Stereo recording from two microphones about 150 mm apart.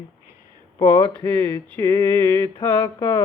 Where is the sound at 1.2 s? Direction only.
15° left (ahead or behind).